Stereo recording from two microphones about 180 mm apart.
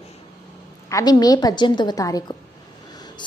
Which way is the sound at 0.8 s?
20° left (ahead or behind).